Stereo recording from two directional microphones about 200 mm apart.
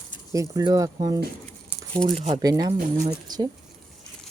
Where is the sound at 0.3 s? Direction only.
15° right (ahead or behind).